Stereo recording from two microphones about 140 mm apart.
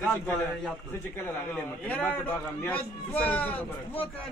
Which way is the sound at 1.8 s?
10° left (ahead or behind).